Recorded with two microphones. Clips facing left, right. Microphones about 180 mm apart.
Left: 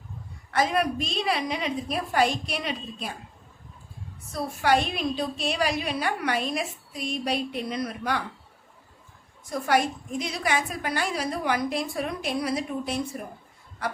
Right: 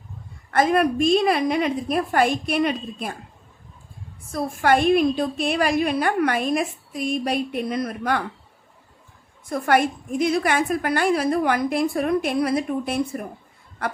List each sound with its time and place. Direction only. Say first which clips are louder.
0.5 s a woman's voice: right 6 dB; 50° right (ahead or behind)
4.3 s a woman's voice: right 4 dB; 50° right (ahead or behind)
9.5 s a woman's voice: right 4 dB; 55° right (ahead or behind)